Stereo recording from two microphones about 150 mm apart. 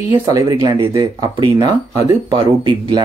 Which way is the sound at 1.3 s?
35° right (ahead or behind).